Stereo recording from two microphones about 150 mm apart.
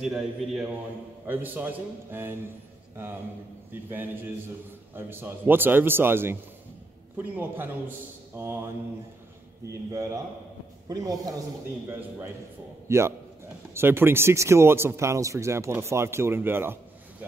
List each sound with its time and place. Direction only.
0.0 s a man's voice: 5° right (ahead or behind)
1.2 s speech: 15° right (ahead or behind)
3.9 s speech: 15° right (ahead or behind)
9.8 s a man's voice: 25° right (ahead or behind)
12.8 s a man's voice: 20° right (ahead or behind)